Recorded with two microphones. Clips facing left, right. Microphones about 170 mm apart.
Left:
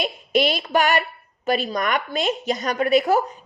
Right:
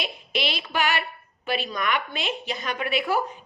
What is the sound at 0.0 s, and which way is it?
A woman's voice, 45° left (ahead or behind).